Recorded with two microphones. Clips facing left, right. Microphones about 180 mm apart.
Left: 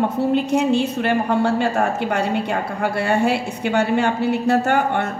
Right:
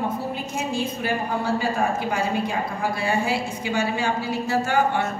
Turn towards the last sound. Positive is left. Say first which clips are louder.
# left 3 dB
turn(degrees=60)  # may be behind; listen again after turning